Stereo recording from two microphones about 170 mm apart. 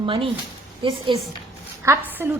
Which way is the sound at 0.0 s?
30° right (ahead or behind).